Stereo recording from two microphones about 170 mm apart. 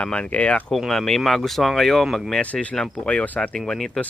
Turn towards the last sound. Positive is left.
turn(degrees=5)  # may be behind; listen again after turning